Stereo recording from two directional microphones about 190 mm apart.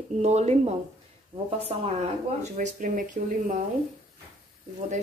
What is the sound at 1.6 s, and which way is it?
A woman's voice, 35° right (ahead or behind).